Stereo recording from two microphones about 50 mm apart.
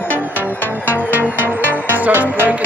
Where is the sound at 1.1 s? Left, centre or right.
Right.